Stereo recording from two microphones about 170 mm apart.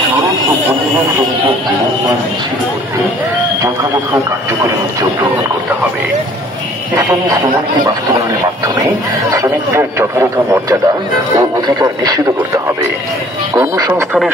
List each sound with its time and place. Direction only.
9.3 s speech: 15° right (ahead or behind)